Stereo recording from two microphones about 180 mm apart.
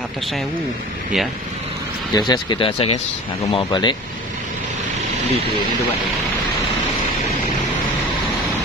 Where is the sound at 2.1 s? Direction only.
25° left (ahead or behind).